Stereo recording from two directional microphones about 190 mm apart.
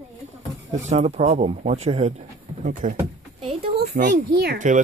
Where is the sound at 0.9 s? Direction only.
35° right (ahead or behind).